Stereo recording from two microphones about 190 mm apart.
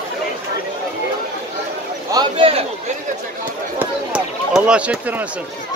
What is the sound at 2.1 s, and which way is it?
Speech, 25° right (ahead or behind).